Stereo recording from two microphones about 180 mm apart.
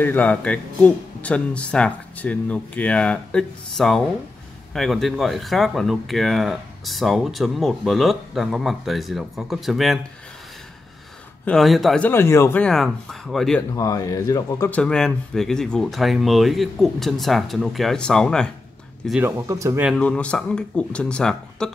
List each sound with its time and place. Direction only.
0.0 s speech: 10° left (ahead or behind)
11.4 s speech: centre (ahead or behind)
12.6 s speech: centre (ahead or behind)
13.7 s speech: 20° left (ahead or behind)
14.8 s speech: 5° left (ahead or behind)
19.0 s speech: 10° right (ahead or behind)
19.9 s speech: 5° left (ahead or behind)